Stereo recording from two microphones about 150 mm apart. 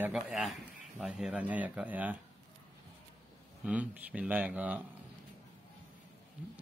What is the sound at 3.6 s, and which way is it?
Mantra, 10° right (ahead or behind).